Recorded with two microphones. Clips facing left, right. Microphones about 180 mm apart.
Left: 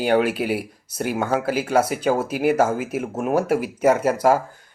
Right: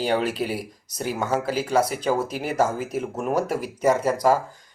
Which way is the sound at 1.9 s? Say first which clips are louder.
Left 3 dB; 5° left (ahead or behind).